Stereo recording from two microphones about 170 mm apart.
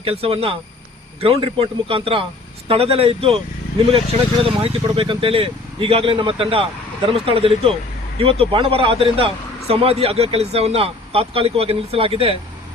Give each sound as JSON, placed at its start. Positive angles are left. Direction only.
{"t": 0.0, "sound": "speech", "side_deg": -35}
{"t": 4.4, "sound": "speech", "side_deg": -30}